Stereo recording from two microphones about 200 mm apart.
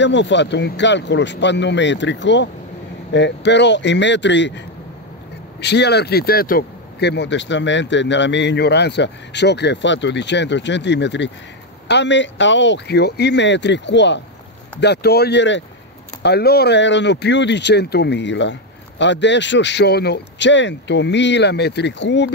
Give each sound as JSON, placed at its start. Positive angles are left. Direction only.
{"t": 0.0, "sound": "speech", "side_deg": 60}
{"t": 5.6, "sound": "speech", "side_deg": 55}